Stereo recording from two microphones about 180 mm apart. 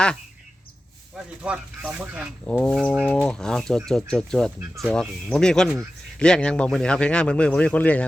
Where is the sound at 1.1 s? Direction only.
5° right (ahead or behind).